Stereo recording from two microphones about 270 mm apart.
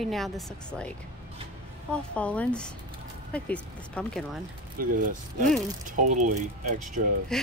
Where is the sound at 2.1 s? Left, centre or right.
Centre.